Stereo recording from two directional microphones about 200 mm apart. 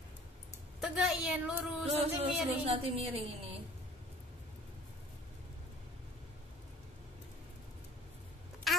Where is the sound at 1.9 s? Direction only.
30° right (ahead or behind).